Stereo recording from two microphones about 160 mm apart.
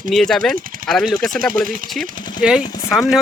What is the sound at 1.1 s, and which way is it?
Speech, 60° right (ahead or behind).